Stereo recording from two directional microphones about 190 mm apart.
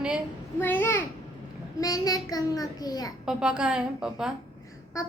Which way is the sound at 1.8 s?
20° left (ahead or behind).